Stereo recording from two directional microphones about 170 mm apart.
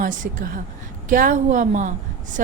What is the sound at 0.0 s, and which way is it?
A woman's voice, 50° right (ahead or behind).